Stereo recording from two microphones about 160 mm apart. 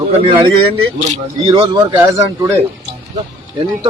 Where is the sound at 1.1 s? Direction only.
35° right (ahead or behind).